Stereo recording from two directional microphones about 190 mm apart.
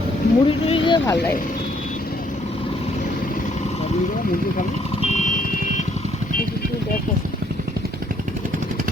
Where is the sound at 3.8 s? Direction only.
40° left (ahead or behind).